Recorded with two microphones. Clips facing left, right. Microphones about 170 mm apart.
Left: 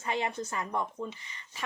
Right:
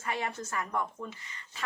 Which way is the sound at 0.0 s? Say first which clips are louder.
Left 2 dB; 20° left (ahead or behind).